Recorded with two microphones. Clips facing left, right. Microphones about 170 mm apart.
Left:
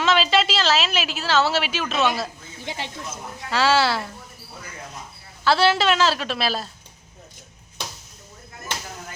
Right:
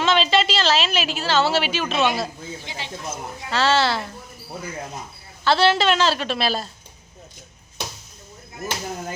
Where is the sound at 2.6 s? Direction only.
55° left (ahead or behind).